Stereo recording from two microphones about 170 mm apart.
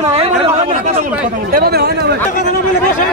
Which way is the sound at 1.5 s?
70° right (ahead or behind).